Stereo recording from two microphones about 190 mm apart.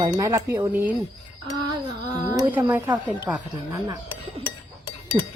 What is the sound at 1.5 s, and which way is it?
Music, 20° right (ahead or behind).